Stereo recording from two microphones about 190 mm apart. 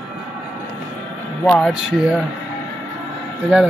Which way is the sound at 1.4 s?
5° left (ahead or behind).